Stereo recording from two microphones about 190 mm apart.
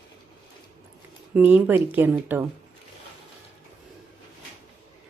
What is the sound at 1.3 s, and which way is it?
Speech, 10° right (ahead or behind).